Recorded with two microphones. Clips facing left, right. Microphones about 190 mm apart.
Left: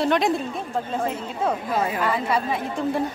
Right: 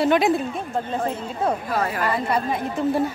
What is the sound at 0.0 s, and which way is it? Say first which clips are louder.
Speech: right 2 dB; 5° right (ahead or behind).